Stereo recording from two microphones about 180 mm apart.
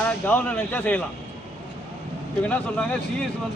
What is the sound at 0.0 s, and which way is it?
Speech, 10° left (ahead or behind).